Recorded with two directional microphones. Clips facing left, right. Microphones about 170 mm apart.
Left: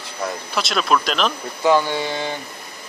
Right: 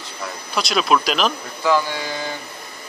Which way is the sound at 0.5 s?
Centre (ahead or behind).